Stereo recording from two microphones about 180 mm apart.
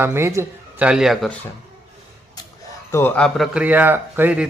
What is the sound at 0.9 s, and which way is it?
Speech, 5° right (ahead or behind).